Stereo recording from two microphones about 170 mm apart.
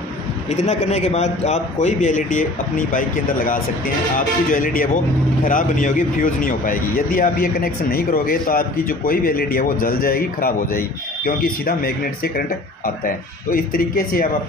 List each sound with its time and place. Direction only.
0.5 s a man's voice: 40° left (ahead or behind); by 14.2 s 60° left (ahead or behind)